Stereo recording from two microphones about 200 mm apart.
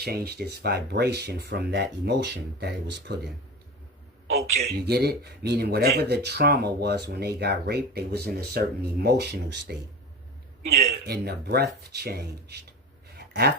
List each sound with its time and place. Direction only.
0.0 s speech: 50° right (ahead or behind)
4.4 s speech: 55° right (ahead or behind)
13.1 s a sound: 50° right (ahead or behind)